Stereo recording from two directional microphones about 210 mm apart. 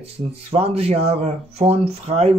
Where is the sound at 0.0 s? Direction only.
30° right (ahead or behind).